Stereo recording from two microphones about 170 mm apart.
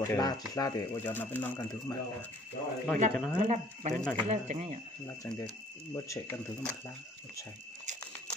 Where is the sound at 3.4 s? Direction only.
45° right (ahead or behind).